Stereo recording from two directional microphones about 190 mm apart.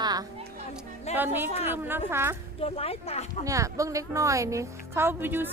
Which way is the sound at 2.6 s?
30° left (ahead or behind).